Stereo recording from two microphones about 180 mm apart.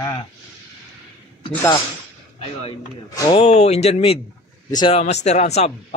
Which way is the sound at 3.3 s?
35° left (ahead or behind).